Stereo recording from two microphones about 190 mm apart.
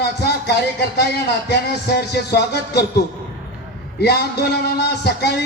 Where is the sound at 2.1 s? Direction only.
60° left (ahead or behind).